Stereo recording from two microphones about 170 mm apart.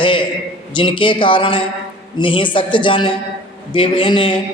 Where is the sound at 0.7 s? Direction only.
30° left (ahead or behind).